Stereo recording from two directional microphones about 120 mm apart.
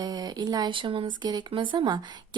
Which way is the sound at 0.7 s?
45° right (ahead or behind).